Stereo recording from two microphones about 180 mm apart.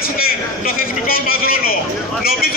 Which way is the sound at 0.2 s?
55° left (ahead or behind).